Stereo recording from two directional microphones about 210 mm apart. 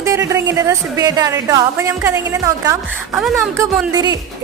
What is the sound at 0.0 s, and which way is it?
A woman's voice, 15° right (ahead or behind).